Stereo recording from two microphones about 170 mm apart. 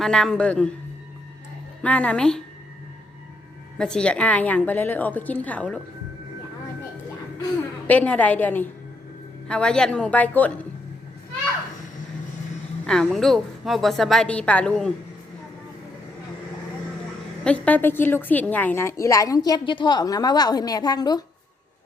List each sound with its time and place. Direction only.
0.0 s a woman's voice: 5° left (ahead or behind)
1.8 s a woman's voice: 10° left (ahead or behind)
3.8 s a woman's voice: 5° left (ahead or behind)
7.9 s a woman's voice: 10° left (ahead or behind)
12.8 s a woman's voice: centre (ahead or behind)
17.4 s a woman's voice: 10° left (ahead or behind); by 21.2 s 25° left (ahead or behind)